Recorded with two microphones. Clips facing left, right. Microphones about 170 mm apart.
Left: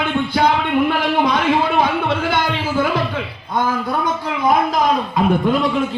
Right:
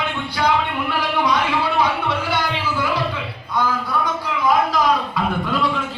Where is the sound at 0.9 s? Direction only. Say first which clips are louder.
Left 3 dB; 50° left (ahead or behind).